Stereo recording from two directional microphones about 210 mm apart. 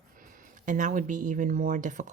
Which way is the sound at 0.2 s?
40° right (ahead or behind).